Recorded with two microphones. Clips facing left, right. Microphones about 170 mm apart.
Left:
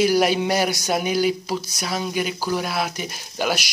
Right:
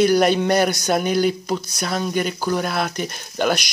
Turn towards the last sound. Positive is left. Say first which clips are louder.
# right 3 dB
turn(degrees=5)  # may be behind; listen again after turning